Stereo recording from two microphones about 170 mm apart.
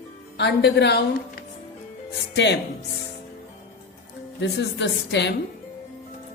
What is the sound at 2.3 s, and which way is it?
Speech, 90° left.